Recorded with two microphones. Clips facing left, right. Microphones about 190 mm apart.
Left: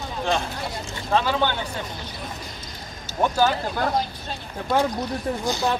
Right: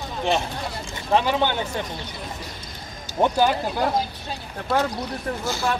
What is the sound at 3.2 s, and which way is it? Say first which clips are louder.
Speech: right 1 dB; 15° right (ahead or behind).